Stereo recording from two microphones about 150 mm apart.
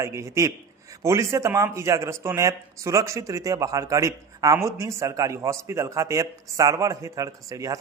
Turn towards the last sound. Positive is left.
turn(degrees=-25)  # may be behind; listen again after turning